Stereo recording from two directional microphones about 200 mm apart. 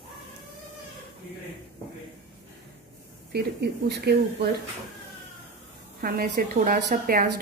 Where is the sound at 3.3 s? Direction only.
55° right (ahead or behind).